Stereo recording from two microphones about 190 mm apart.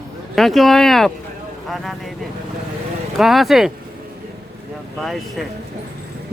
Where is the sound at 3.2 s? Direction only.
Centre (ahead or behind).